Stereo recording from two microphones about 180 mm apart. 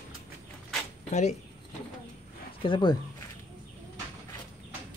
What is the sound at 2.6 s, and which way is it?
Speech, 25° left (ahead or behind).